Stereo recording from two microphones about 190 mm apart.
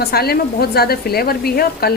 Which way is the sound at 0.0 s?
55° left (ahead or behind).